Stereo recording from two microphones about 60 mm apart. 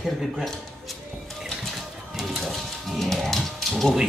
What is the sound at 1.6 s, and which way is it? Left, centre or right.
Music, centre.